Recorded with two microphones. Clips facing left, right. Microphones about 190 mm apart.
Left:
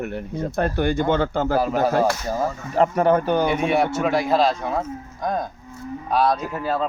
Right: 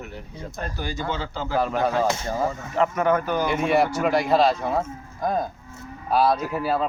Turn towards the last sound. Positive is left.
turn(degrees=-5)  # may be behind; listen again after turning